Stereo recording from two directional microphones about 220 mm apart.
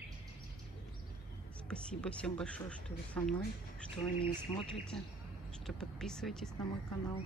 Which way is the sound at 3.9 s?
25° left (ahead or behind).